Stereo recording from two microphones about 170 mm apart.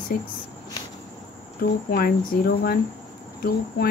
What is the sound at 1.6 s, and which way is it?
Speech, 65° left (ahead or behind).